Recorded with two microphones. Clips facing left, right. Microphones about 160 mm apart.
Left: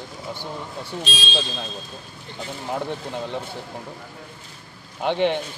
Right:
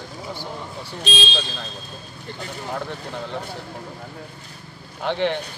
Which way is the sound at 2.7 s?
15° left (ahead or behind).